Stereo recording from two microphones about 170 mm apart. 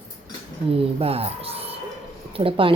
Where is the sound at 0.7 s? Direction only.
35° right (ahead or behind).